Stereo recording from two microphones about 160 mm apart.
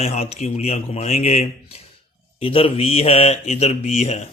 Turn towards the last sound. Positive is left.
turn(degrees=45)  # may be behind; listen again after turning